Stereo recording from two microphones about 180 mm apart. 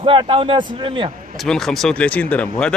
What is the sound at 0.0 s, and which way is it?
A man's voice, 30° right (ahead or behind).